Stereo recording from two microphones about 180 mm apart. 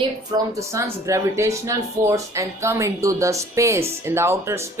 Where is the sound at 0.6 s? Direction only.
15° right (ahead or behind).